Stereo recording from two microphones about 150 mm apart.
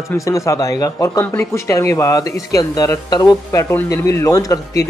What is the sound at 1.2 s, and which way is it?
A man's voice, 15° left (ahead or behind).